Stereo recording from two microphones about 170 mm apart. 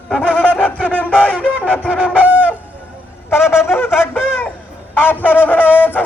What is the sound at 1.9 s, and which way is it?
Fowl, 5° right (ahead or behind).